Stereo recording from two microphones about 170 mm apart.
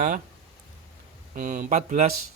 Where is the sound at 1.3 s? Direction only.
50° right (ahead or behind).